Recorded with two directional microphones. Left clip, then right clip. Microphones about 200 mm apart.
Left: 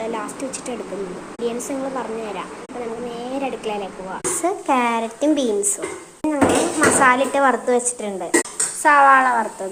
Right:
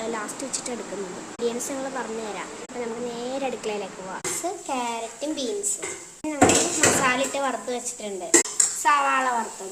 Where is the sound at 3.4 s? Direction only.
10° right (ahead or behind).